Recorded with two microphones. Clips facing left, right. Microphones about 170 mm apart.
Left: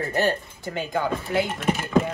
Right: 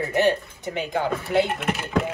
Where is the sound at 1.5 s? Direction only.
65° right (ahead or behind).